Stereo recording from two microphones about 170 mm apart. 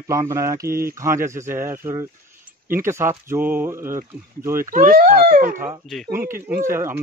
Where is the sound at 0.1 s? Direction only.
20° right (ahead or behind).